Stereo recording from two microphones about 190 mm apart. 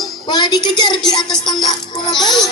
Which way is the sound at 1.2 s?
Centre (ahead or behind).